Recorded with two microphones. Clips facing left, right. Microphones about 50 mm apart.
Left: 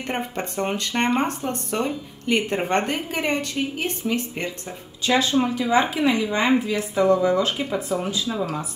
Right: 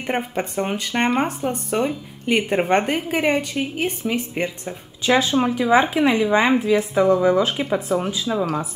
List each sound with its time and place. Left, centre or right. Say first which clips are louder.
0.4 s speech: right 2 dB; centre